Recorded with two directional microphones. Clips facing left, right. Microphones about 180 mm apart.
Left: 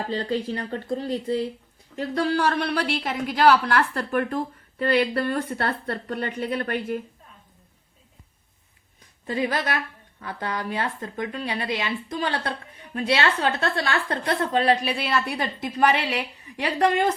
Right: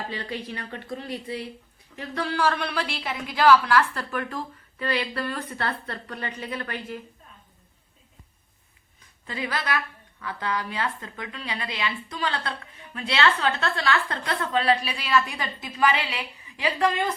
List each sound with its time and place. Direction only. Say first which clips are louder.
0.6 s speech: left 7 dB; 30° left (ahead or behind)
2.2 s a woman's voice: left 2 dB; 40° left (ahead or behind); by 7.0 s 55° left (ahead or behind)
9.2 s a woman's voice: left 5 dB; 45° left (ahead or behind)
16.8 s a woman's voice: left 4 dB; 70° left (ahead or behind)